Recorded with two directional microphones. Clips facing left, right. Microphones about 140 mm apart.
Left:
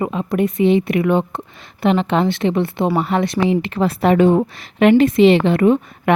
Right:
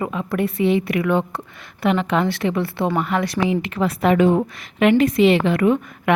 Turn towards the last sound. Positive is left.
turn(degrees=30)  # may be behind; listen again after turning